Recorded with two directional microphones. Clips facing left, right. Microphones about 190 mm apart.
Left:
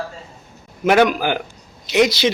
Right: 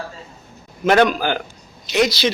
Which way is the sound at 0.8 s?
10° left (ahead or behind).